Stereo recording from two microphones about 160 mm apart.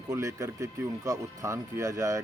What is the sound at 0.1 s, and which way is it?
Speech, 20° right (ahead or behind).